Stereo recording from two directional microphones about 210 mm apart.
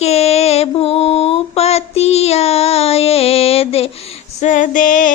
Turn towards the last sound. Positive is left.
turn(degrees=40)  # may be behind; listen again after turning